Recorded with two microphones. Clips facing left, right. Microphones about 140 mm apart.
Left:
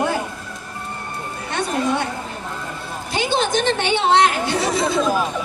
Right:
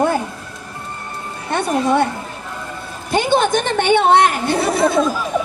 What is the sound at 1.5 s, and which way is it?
Speech, 55° right (ahead or behind).